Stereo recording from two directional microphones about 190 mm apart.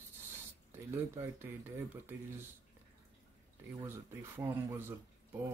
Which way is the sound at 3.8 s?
10° right (ahead or behind).